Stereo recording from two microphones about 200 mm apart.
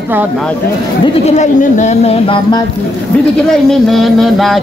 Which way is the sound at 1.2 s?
35° left (ahead or behind).